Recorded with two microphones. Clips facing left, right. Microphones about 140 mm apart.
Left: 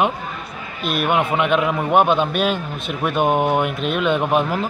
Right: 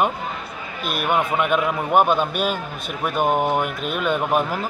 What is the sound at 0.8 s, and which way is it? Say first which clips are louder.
Speech: left 2 dB; centre (ahead or behind).